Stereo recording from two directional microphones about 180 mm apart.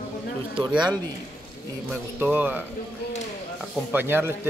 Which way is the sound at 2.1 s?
10° right (ahead or behind).